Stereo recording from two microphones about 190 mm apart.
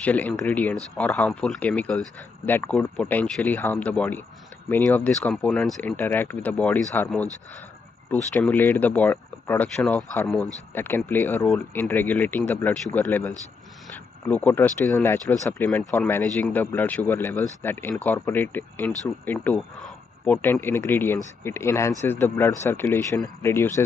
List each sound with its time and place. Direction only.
0.0 s speech: 5° left (ahead or behind)
8.4 s speech: 10° left (ahead or behind)